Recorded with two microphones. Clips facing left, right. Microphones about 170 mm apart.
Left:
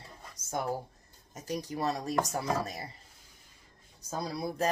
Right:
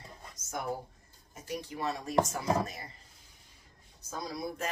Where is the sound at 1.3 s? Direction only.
40° left (ahead or behind).